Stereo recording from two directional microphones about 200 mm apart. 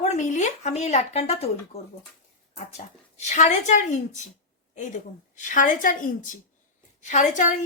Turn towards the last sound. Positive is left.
turn(degrees=40)  # may be behind; listen again after turning